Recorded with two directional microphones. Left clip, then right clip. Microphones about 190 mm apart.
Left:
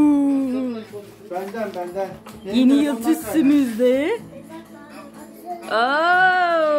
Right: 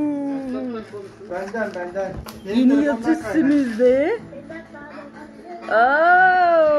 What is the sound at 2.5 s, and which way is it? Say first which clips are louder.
Speech: even; 30° left (ahead or behind).